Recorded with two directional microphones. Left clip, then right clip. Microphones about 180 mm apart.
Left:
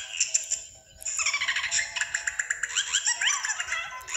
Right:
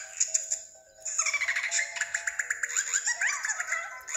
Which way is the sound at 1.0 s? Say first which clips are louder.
Left 2 dB; 10° right (ahead or behind).